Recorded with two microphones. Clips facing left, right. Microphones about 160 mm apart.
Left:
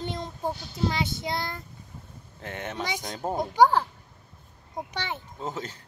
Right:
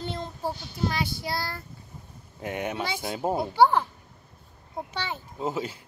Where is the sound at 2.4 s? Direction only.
10° right (ahead or behind).